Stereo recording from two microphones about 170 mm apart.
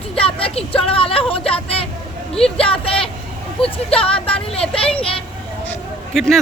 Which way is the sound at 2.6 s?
35° left (ahead or behind).